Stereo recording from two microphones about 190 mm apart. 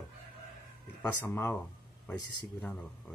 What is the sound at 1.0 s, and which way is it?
Speech, 10° left (ahead or behind).